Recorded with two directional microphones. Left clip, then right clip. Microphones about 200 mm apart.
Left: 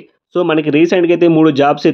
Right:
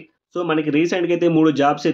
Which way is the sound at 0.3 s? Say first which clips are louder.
Left 7 dB; 50° left (ahead or behind).